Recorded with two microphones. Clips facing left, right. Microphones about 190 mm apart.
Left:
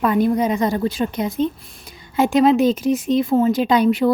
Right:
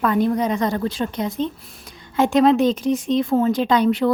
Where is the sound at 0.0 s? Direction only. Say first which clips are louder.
Left 2 dB; 10° left (ahead or behind).